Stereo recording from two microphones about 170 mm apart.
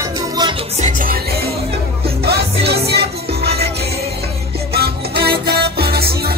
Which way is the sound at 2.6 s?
70° right (ahead or behind).